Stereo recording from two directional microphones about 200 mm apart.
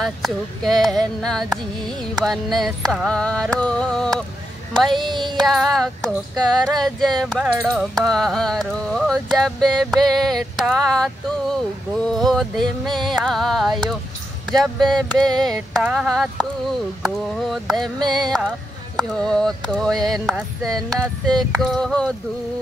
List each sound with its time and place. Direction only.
0.0 s carnatic music: centre (ahead or behind)
5.0 s music: 25° right (ahead or behind)
5.5 s carnatic music: centre (ahead or behind)